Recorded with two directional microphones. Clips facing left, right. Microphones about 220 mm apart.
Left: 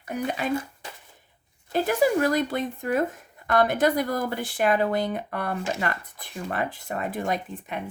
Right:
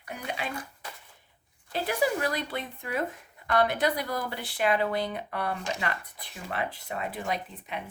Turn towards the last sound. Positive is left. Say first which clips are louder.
# left 4 dB
turn(degrees=45)  # may be behind; listen again after turning